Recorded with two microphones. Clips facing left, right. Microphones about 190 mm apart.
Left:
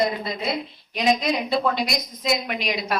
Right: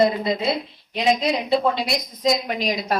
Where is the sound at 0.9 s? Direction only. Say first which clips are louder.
Right 1 dB; 25° right (ahead or behind).